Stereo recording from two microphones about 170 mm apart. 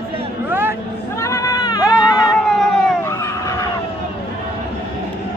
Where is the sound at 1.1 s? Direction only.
15° left (ahead or behind).